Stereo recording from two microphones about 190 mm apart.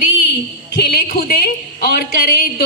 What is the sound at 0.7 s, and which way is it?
A woman's voice, 55° left (ahead or behind).